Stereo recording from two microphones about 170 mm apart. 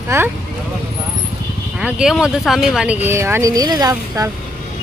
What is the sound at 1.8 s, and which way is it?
Speech, 5° right (ahead or behind).